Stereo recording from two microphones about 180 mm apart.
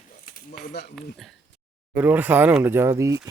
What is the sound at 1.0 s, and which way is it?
Speech, centre (ahead or behind).